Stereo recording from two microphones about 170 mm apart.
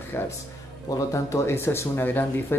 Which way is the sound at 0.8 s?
15° left (ahead or behind).